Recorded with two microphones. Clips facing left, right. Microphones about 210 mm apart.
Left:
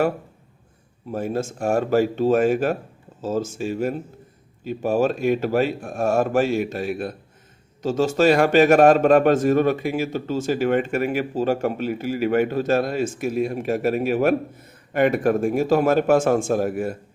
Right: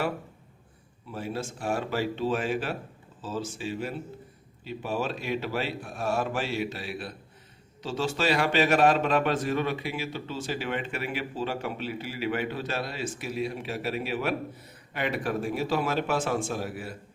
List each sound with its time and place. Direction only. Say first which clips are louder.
1.1 s a man's voice: left 9 dB; 45° left (ahead or behind)